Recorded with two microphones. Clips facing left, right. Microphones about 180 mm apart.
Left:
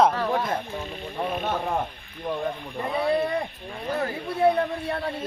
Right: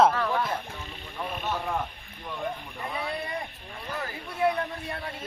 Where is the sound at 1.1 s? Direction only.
50° left (ahead or behind).